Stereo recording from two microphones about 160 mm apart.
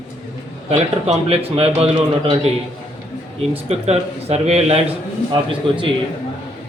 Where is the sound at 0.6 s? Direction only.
40° right (ahead or behind).